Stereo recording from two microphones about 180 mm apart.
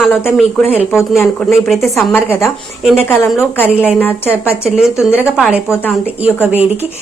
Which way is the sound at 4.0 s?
10° left (ahead or behind).